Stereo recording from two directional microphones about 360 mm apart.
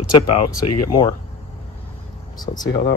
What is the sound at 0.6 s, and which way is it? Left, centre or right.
Speech, left.